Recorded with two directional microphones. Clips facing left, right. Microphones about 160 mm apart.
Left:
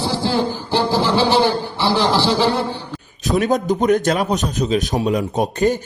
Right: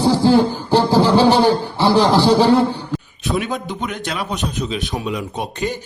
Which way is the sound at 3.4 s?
40° left (ahead or behind).